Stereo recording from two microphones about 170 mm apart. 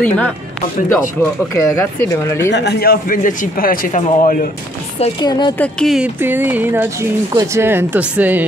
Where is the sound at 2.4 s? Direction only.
85° left; by 4.4 s 55° left (ahead or behind).